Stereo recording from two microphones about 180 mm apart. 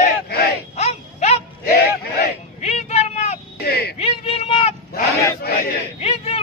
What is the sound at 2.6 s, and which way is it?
Vehicle, 35° left (ahead or behind).